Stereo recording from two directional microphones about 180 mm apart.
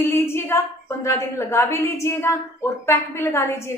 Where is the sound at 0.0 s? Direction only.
15° left (ahead or behind).